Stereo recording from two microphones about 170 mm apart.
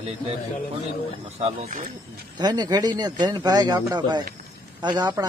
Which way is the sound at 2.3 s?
25° right (ahead or behind).